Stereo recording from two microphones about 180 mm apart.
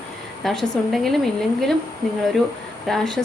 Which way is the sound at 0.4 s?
Centre (ahead or behind).